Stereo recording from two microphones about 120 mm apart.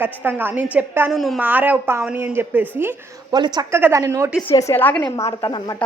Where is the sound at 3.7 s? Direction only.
20° right (ahead or behind).